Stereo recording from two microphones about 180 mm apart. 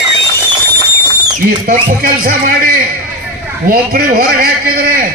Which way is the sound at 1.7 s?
50° right (ahead or behind).